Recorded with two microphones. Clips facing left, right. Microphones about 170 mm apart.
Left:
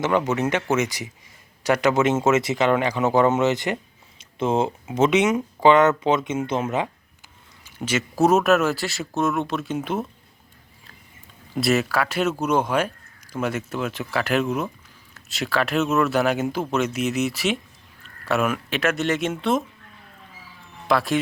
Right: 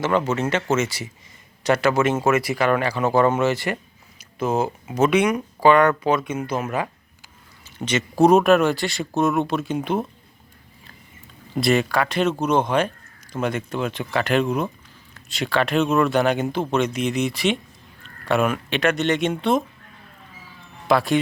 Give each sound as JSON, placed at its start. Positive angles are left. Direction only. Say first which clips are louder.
{"t": 0.0, "sound": "speech", "louder": "even", "side_deg": 15}
{"t": 4.2, "sound": "a sound", "louder": "left 1 dB", "side_deg": 25}
{"t": 4.9, "sound": "speech", "louder": "even", "side_deg": 20}
{"t": 7.6, "sound": "speech", "louder": "right 1 dB", "side_deg": 5}
{"t": 11.5, "sound": "speech", "louder": "right 2 dB", "side_deg": 5}
{"t": 20.8, "sound": "speech", "louder": "right 2 dB", "side_deg": 0}